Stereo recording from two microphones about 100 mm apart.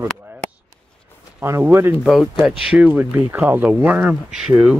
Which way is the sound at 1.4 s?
20° right (ahead or behind).